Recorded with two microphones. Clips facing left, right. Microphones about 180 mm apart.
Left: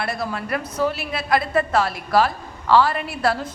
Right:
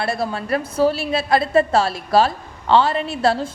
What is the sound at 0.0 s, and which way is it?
A woman's voice, 30° right (ahead or behind).